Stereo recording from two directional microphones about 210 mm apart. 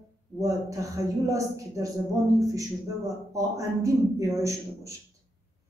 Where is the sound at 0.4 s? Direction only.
15° right (ahead or behind).